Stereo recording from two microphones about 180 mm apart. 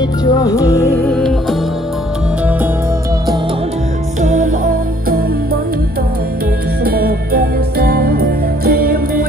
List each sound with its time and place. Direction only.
0.2 s music: 20° left (ahead or behind)
1.0 s music: 5° left (ahead or behind)
4.2 s music: 45° right (ahead or behind)
6.8 s music: 55° right (ahead or behind)